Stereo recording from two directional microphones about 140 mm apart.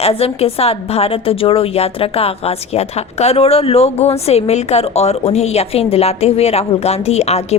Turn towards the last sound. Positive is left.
turn(degrees=50)  # may be behind; listen again after turning